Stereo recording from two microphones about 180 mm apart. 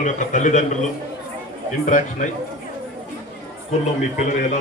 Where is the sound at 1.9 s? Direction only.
45° left (ahead or behind).